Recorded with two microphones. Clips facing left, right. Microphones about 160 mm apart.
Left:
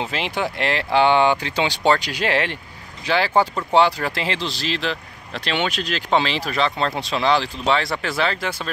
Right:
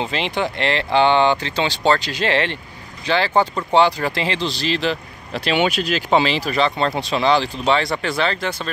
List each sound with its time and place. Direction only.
0.0 s speech: 5° left (ahead or behind)